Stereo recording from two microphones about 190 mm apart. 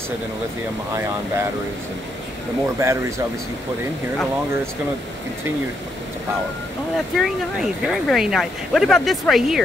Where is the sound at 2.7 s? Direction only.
15° right (ahead or behind).